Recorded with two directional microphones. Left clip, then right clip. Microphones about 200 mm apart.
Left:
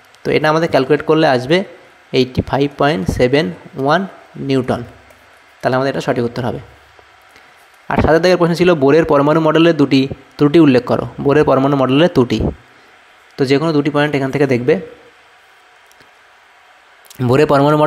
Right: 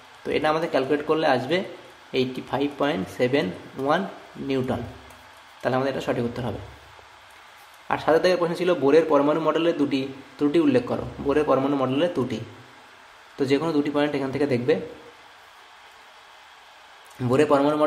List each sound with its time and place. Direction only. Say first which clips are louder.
0.2 s a man's voice: left 9 dB; 40° left (ahead or behind)
7.9 s a man's voice: left 8 dB; 40° left (ahead or behind)
13.4 s a man's voice: left 9 dB; 30° left (ahead or behind)
17.2 s speech: left 8 dB; 45° left (ahead or behind)